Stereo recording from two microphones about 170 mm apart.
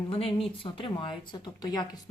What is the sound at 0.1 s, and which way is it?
A woman's voice, 30° left (ahead or behind).